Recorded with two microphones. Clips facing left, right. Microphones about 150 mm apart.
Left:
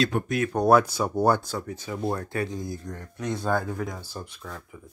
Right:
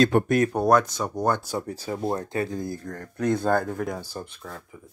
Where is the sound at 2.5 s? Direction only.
50° right (ahead or behind).